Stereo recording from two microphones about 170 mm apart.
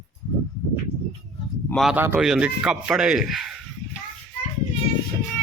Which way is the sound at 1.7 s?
Centre (ahead or behind).